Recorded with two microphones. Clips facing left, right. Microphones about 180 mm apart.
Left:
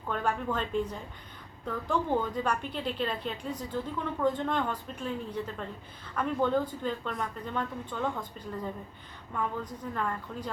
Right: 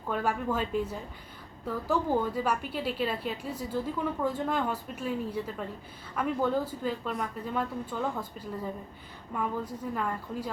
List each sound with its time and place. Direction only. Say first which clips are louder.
0.1 s speech: right 1 dB; 5° right (ahead or behind)